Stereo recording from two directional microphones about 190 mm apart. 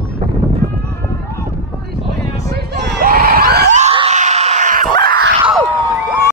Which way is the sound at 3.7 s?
35° right (ahead or behind).